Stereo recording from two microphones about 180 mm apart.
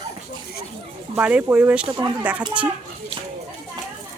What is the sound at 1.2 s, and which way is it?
Speech, 10° right (ahead or behind).